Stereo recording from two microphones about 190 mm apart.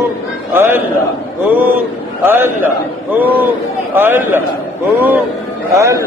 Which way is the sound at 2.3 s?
10° right (ahead or behind).